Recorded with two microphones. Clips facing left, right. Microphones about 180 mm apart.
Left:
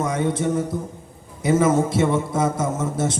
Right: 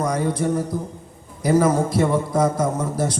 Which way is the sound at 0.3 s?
25° left (ahead or behind).